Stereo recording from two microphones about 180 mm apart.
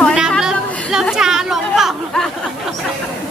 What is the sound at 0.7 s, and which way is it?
Chatter, 5° left (ahead or behind).